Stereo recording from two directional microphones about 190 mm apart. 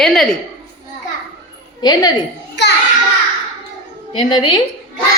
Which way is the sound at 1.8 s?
20° left (ahead or behind).